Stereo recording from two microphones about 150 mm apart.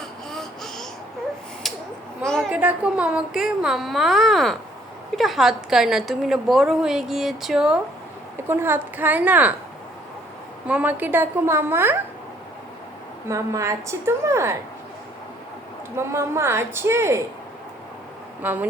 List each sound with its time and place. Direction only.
0.3 s a sound: 5° left (ahead or behind)
2.5 s a woman's voice: 10° right (ahead or behind)
8.4 s a woman's voice: 15° right (ahead or behind)
10.7 s a woman's voice: 10° right (ahead or behind)
13.2 s a woman's voice: 20° right (ahead or behind)
16.0 s a woman's voice: 15° right (ahead or behind)
18.4 s a woman's voice: 10° right (ahead or behind)